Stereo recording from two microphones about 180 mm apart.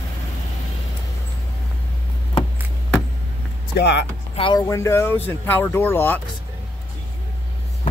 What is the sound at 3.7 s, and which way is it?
Speech, 70° left (ahead or behind).